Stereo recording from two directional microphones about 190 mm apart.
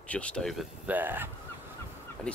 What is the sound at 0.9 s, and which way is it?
Speech, 10° right (ahead or behind).